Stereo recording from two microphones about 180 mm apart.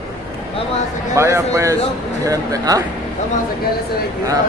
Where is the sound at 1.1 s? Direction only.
15° right (ahead or behind).